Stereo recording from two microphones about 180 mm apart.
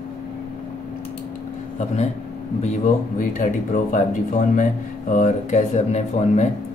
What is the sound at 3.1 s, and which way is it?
Speech, 45° left (ahead or behind).